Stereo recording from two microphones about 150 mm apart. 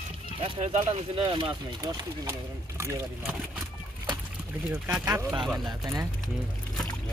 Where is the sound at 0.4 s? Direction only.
45° right (ahead or behind).